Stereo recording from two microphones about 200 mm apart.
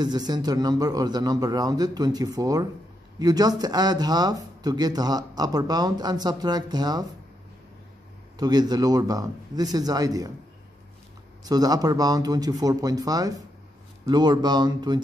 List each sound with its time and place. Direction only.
0.0 s speech: 20° right (ahead or behind)
8.4 s speech: 20° right (ahead or behind)
11.4 s speech: 20° right (ahead or behind)